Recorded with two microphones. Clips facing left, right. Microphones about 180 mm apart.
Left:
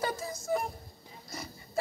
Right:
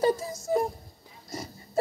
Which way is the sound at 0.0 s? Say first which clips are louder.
Right 9 dB; 40° right (ahead or behind).